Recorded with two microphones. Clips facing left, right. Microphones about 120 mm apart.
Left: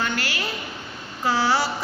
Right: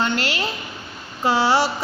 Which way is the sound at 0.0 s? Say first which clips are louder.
Right 4 dB; 25° right (ahead or behind).